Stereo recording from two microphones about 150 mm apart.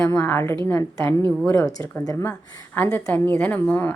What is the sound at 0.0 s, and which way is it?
A woman's voice, 20° left (ahead or behind).